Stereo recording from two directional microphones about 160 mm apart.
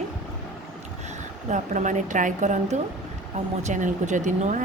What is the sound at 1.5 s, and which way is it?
A woman's voice, 50° right (ahead or behind).